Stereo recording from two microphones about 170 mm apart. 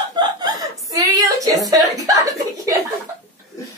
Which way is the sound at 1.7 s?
20° right (ahead or behind).